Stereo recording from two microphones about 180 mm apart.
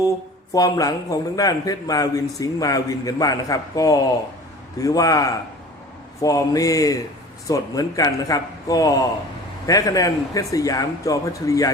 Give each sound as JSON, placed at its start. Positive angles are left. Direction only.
{"t": 0.5, "sound": "a man's voice", "side_deg": 20}